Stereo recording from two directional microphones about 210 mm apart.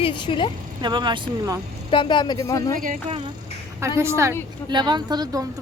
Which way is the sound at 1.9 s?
25° left (ahead or behind).